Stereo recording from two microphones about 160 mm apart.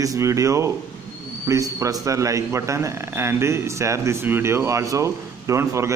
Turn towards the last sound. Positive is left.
turn(degrees=-15)  # may be behind; listen again after turning